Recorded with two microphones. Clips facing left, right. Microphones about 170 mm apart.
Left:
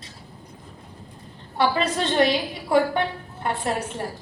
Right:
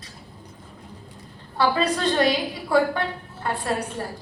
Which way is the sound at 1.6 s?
25° left (ahead or behind).